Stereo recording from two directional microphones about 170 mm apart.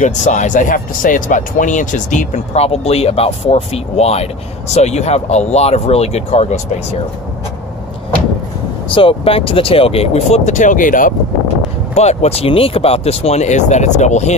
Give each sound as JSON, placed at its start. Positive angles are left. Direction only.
{"t": 0.0, "sound": "speech", "side_deg": 45}
{"t": 8.8, "sound": "speech", "side_deg": 30}
{"t": 11.9, "sound": "speech", "side_deg": 40}